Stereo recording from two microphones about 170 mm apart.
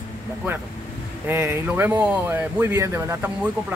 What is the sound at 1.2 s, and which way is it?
Speech, 15° right (ahead or behind).